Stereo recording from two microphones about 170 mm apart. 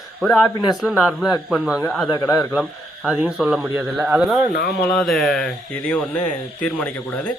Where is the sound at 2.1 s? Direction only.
20° left (ahead or behind).